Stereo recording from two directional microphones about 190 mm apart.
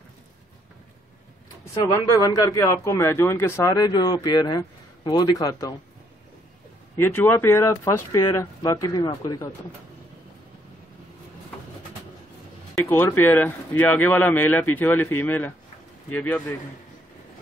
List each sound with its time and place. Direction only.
1.9 s a man's voice: 20° left (ahead or behind)
7.0 s speech: 10° left (ahead or behind)
12.7 s speech: 10° left (ahead or behind)